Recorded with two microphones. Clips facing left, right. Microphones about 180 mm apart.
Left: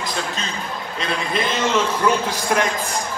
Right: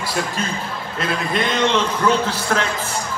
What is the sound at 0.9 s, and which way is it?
A man's voice, centre (ahead or behind).